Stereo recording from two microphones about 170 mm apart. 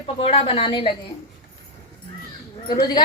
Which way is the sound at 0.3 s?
35° left (ahead or behind).